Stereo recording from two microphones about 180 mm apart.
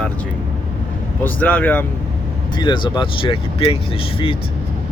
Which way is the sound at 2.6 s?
25° left (ahead or behind).